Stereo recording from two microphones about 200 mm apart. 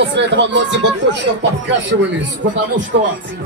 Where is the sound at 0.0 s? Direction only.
60° right (ahead or behind).